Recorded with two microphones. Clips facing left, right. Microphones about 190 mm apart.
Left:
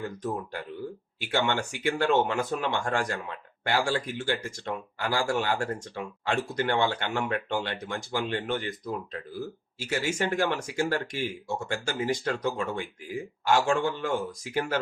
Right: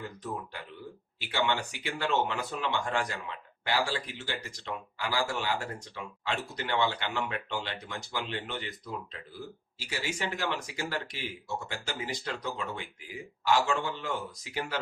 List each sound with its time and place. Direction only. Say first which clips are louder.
1.2 s speech: left 3 dB; 50° left (ahead or behind)
9.7 s speech: left 7 dB; 50° left (ahead or behind)